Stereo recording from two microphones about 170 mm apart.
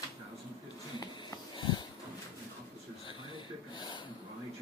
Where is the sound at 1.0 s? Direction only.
25° left (ahead or behind).